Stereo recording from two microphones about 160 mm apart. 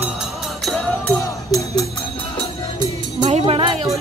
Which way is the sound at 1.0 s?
20° left (ahead or behind).